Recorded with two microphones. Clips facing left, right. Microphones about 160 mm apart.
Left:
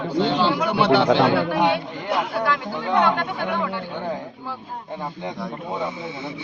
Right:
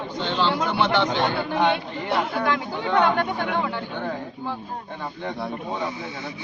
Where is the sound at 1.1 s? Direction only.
85° left.